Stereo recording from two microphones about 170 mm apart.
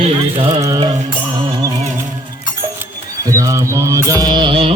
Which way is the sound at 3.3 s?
20° right (ahead or behind).